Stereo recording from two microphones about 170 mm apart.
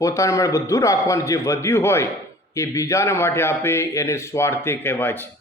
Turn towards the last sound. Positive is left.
turn(degrees=10)  # may be behind; listen again after turning